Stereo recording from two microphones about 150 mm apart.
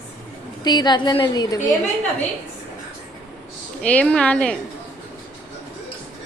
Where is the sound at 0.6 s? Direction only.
30° left (ahead or behind).